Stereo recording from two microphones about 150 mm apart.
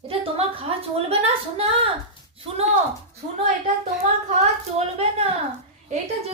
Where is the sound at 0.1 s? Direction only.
40° right (ahead or behind).